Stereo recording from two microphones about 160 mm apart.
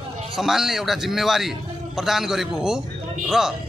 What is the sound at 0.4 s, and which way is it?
A man's voice, centre (ahead or behind).